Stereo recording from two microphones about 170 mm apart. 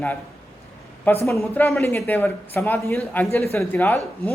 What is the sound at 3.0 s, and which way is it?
Speech, centre (ahead or behind).